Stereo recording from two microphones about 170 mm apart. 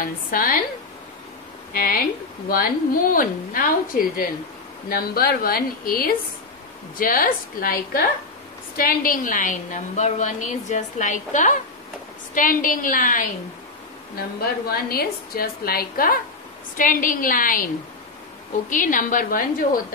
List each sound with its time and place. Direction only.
0.0 s speech: 55° left (ahead or behind)
1.7 s a woman's voice: 60° left (ahead or behind)
14.7 s a woman's voice: 60° left (ahead or behind)
18.7 s a woman's voice: 50° left (ahead or behind)